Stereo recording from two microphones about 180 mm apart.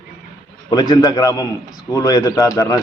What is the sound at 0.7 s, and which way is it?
A man's voice, 25° left (ahead or behind).